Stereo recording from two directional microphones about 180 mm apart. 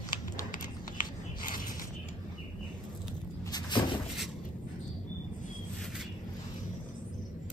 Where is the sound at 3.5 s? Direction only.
25° left (ahead or behind).